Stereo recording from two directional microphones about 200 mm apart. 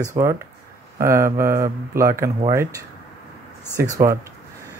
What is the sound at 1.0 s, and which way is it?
Speech, 15° right (ahead or behind).